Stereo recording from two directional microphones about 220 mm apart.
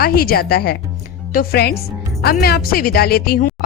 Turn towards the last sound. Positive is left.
turn(degrees=45)  # may be behind; listen again after turning